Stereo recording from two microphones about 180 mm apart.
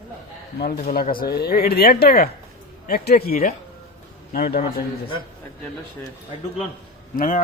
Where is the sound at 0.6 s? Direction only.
55° left (ahead or behind).